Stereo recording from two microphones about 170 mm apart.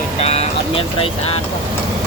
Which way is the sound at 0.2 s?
40° left (ahead or behind).